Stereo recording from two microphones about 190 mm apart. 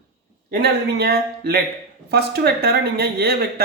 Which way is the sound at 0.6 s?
55° right (ahead or behind).